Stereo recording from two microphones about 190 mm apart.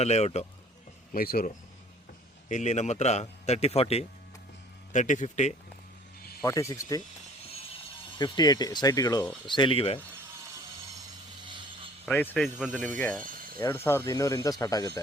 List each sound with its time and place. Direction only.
0.0 s a man's voice: 35° left (ahead or behind)
1.1 s speech: 50° left (ahead or behind)
2.5 s a man's voice: 40° left (ahead or behind)
6.4 s speech: 15° left (ahead or behind)
8.2 s speech: 20° left (ahead or behind)
12.0 s speech: 10° left (ahead or behind)